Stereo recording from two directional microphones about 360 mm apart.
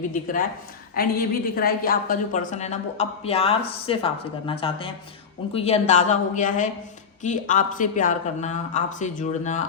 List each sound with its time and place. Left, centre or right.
0.1 s speech: left